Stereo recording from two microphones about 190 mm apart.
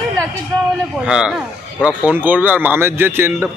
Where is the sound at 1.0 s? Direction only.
5° right (ahead or behind).